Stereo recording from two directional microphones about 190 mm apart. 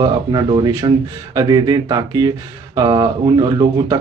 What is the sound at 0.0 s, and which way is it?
Speech, 25° right (ahead or behind).